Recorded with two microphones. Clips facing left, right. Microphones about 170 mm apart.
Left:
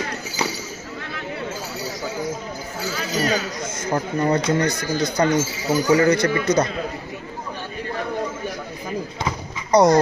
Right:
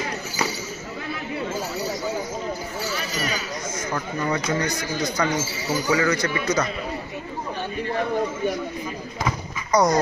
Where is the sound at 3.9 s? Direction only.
35° left (ahead or behind).